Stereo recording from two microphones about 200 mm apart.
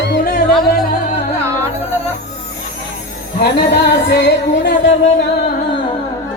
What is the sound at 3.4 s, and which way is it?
Music, 55° left (ahead or behind).